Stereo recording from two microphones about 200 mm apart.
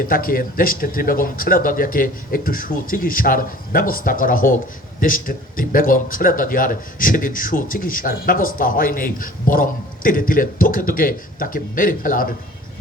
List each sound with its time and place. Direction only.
0.0 s speech: 45° left (ahead or behind)